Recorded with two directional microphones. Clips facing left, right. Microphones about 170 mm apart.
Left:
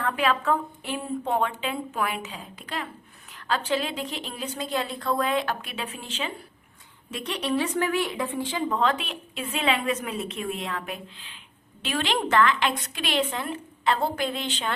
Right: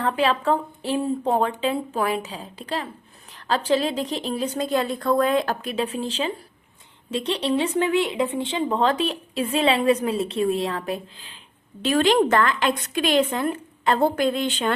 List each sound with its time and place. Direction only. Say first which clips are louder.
0.0 s a woman's voice: right 3 dB; 30° right (ahead or behind); by 14.7 s 50° right (ahead or behind)